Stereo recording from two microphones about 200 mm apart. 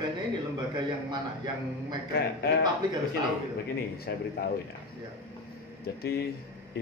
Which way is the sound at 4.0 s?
50° left (ahead or behind).